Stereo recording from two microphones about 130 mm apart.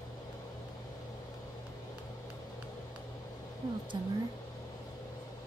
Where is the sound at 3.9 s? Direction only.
30° right (ahead or behind).